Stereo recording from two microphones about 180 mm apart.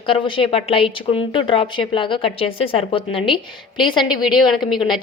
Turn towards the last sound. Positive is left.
turn(degrees=0)  # may be behind; listen again after turning